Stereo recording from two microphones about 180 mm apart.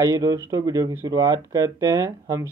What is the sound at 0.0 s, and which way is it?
Speech, 20° right (ahead or behind).